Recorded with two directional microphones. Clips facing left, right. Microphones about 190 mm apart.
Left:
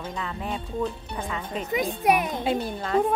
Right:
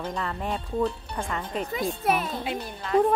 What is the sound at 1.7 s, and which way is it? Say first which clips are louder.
Speech: left 4 dB; 15° left (ahead or behind).